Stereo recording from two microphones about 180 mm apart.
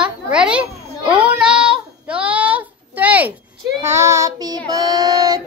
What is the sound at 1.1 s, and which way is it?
Child singing, 5° right (ahead or behind).